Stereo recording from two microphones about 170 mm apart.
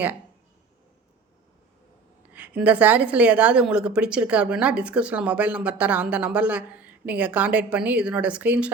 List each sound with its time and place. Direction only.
2.3 s a woman's voice: 10° right (ahead or behind)